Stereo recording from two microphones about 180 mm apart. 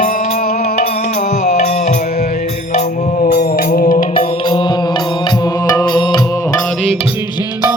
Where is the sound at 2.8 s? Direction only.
55° left (ahead or behind).